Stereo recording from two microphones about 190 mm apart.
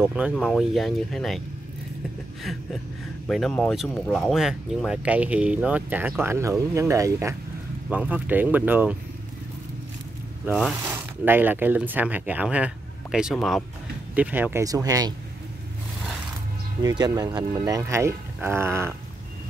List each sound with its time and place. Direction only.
0.0 s speech: 5° right (ahead or behind)
3.3 s speech: centre (ahead or behind)
10.4 s speech: 5° right (ahead or behind)
16.8 s speech: 20° right (ahead or behind)